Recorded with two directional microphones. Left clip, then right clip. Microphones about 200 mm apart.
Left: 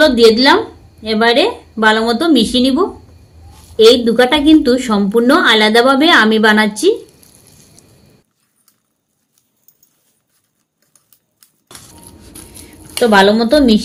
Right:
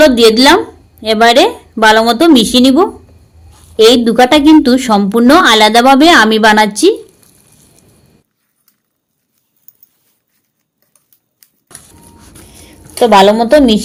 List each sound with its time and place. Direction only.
0.0 s speech: 55° right (ahead or behind)
13.0 s a woman's voice: 40° right (ahead or behind)